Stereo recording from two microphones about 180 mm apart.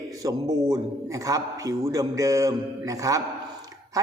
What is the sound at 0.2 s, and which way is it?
A man's voice, 20° right (ahead or behind).